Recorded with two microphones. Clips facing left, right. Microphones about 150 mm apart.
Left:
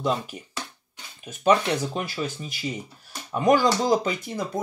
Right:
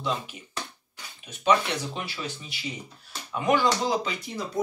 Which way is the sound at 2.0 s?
45° left (ahead or behind).